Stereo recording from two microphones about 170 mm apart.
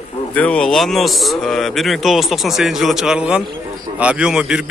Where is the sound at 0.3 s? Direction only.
5° left (ahead or behind).